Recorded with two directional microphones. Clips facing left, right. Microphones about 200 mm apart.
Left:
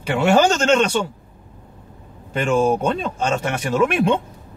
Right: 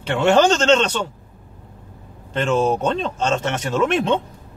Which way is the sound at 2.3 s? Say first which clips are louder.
Left 1 dB; 10° left (ahead or behind).